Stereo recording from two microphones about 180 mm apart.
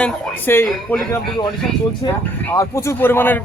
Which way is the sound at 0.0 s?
10° left (ahead or behind).